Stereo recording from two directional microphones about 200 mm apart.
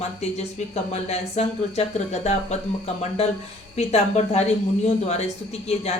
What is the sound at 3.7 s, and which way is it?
Speech, 35° left (ahead or behind).